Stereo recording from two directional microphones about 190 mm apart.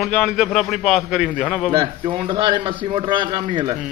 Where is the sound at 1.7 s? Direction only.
25° right (ahead or behind).